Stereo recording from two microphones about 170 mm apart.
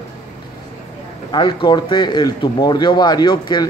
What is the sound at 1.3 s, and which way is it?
Speech, 25° left (ahead or behind).